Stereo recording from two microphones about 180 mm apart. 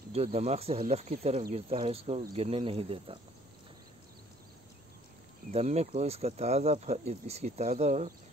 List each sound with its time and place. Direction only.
0.1 s speech: 35° right (ahead or behind)
5.5 s speech: 35° right (ahead or behind)